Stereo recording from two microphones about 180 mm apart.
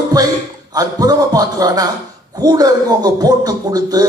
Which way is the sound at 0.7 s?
20° right (ahead or behind).